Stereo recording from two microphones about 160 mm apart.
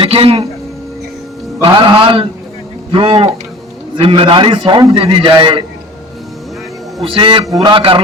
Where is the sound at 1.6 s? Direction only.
35° right (ahead or behind).